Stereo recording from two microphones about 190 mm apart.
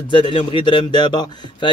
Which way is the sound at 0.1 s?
25° left (ahead or behind).